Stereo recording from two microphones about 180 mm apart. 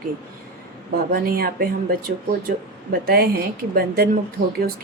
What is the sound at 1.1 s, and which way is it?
Speech, 55° right (ahead or behind).